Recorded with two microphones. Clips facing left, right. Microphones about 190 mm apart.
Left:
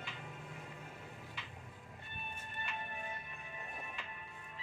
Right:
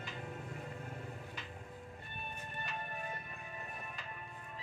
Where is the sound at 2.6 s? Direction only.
40° right (ahead or behind).